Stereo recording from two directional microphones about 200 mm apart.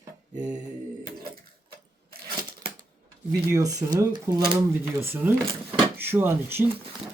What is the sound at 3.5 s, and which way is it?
Speech, 15° right (ahead or behind).